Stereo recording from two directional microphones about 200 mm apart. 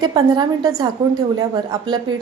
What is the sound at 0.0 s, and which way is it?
A woman's voice, 20° right (ahead or behind).